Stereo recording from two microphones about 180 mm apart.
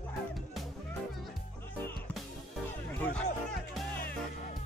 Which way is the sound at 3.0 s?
5° left (ahead or behind).